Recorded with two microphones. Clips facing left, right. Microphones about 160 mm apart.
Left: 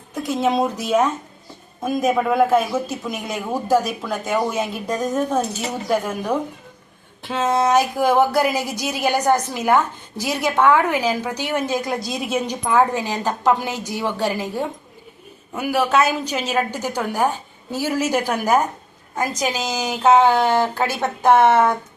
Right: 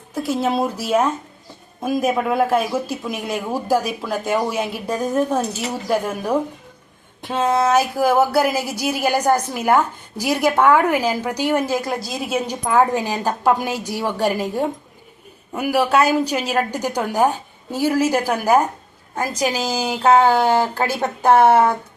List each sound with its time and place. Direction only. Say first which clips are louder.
0.1 s a sound: right 2 dB; 10° right (ahead or behind)
0.5 s a woman's voice: even; 5° right (ahead or behind)
7.2 s a woman's voice: right 1 dB; 15° right (ahead or behind)
19.7 s speech: right 2 dB; 30° right (ahead or behind)
20.1 s a woman's voice: right 1 dB; 10° right (ahead or behind)